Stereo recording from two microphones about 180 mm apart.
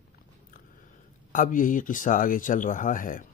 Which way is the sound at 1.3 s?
45° left (ahead or behind).